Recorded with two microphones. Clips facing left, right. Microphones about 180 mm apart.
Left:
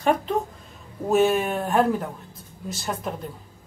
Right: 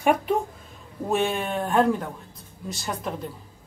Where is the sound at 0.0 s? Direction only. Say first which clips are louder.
Right 1 dB; 10° right (ahead or behind).